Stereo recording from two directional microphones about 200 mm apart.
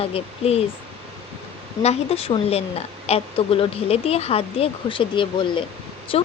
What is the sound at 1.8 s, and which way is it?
A woman's voice, 30° left (ahead or behind).